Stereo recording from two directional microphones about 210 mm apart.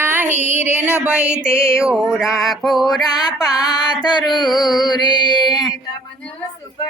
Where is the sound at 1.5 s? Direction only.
10° left (ahead or behind).